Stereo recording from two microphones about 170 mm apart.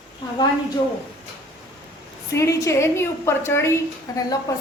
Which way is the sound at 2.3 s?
15° left (ahead or behind).